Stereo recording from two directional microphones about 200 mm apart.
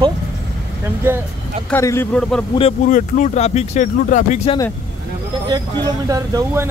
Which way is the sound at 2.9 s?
35° left (ahead or behind).